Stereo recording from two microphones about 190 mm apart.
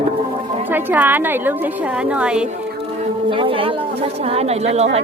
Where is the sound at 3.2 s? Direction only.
25° right (ahead or behind).